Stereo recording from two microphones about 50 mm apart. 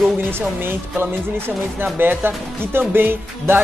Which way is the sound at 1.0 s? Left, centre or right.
Right.